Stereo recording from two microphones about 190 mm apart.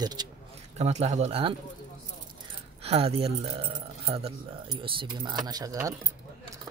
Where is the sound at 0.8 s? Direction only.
35° right (ahead or behind).